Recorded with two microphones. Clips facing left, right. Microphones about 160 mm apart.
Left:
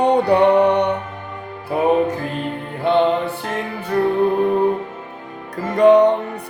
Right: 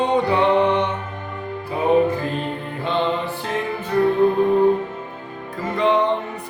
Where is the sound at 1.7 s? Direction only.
55° left (ahead or behind).